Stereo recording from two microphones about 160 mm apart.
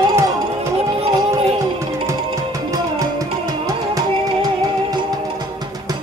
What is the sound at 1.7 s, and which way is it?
Music, 20° right (ahead or behind).